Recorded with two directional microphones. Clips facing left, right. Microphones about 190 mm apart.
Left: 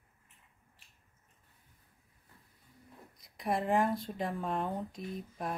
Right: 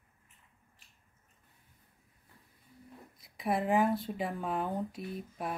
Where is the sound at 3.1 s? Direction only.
Centre (ahead or behind).